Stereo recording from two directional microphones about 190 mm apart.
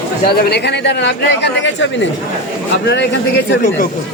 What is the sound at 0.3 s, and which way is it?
Speech, 55° left (ahead or behind).